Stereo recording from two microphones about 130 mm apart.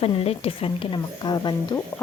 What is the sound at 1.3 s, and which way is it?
Speech, 35° left (ahead or behind).